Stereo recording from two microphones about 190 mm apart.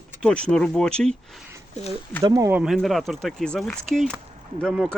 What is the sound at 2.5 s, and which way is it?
Speech, 5° right (ahead or behind).